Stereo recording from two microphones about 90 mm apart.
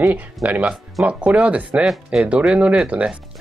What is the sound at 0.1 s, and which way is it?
Speech, 15° right (ahead or behind).